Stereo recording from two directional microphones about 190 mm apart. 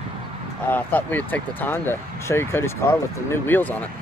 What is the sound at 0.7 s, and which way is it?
Speech, 10° left (ahead or behind).